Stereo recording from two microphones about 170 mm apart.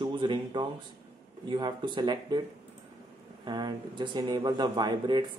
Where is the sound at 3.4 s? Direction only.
25° right (ahead or behind).